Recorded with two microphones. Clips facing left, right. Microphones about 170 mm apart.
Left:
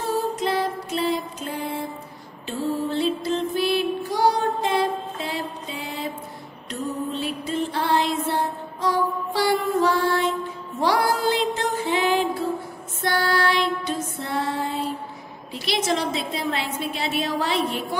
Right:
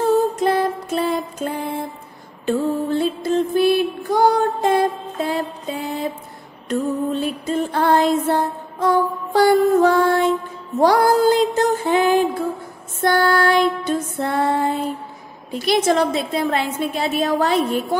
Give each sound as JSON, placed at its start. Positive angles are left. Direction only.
{"t": 0.4, "sound": "music", "side_deg": -50}
{"t": 15.5, "sound": "a woman's voice", "side_deg": -50}